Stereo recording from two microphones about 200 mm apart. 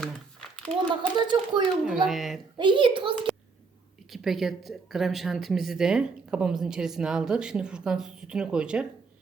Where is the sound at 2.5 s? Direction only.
25° right (ahead or behind).